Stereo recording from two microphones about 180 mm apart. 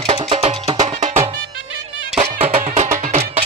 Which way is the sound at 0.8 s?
40° right (ahead or behind).